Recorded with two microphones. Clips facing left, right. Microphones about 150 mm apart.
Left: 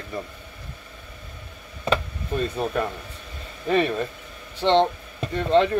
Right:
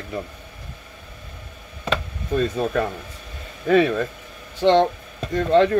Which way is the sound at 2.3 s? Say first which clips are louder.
Right 4 dB; 75° right (ahead or behind).